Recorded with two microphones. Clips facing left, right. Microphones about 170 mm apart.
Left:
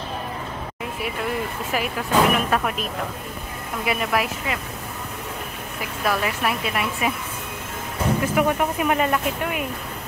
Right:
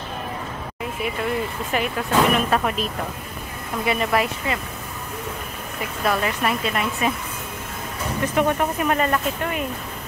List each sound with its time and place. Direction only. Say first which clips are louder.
1.7 s speech: even; 5° left (ahead or behind)
3.8 s speech: right 2 dB; 5° left (ahead or behind)
5.8 s speech: right 1 dB; 5° left (ahead or behind)
8.4 s speech: right 3 dB; 10° left (ahead or behind)